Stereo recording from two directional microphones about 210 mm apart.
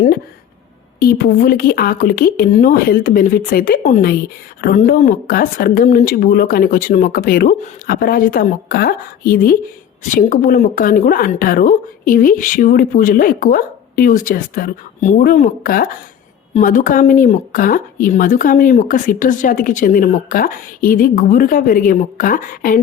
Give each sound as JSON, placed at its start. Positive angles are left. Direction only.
{"t": 0.9, "sound": "speech", "side_deg": 45}